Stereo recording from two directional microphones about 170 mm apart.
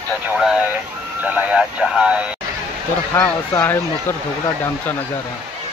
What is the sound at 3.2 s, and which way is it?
Speech, 10° left (ahead or behind).